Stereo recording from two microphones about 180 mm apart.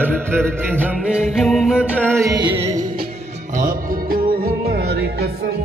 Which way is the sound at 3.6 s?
55° right (ahead or behind).